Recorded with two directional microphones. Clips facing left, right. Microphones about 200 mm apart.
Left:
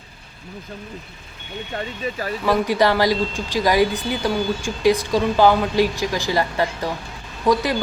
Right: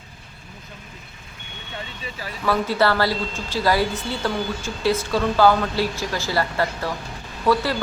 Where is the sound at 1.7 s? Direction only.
45° left (ahead or behind).